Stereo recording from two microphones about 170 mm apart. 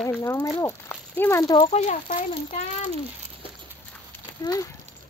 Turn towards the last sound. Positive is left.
turn(degrees=20)  # may be behind; listen again after turning